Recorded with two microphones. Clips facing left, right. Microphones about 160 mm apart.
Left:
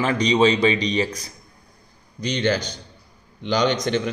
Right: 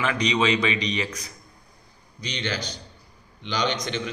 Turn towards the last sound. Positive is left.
turn(degrees=45)  # may be behind; listen again after turning